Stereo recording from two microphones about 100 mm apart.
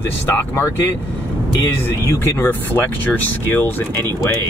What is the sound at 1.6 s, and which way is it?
Speech, 20° left (ahead or behind).